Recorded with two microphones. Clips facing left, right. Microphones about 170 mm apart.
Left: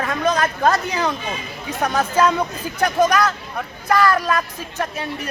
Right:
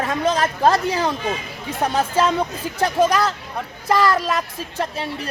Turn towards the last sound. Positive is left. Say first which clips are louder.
# even
turn(degrees=-30)  # may be behind; listen again after turning